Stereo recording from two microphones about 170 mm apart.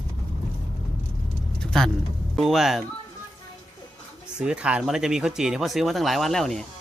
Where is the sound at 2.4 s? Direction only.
Centre (ahead or behind).